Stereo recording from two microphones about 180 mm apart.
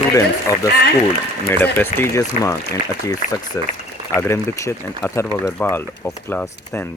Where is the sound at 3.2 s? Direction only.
45° left (ahead or behind).